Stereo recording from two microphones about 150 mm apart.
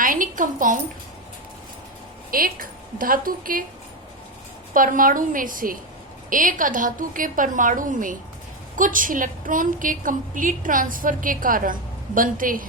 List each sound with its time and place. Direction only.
0.0 s a sound: 65° right (ahead or behind)
2.3 s a woman's voice: 70° right (ahead or behind)
4.7 s a woman's voice: 65° right (ahead or behind)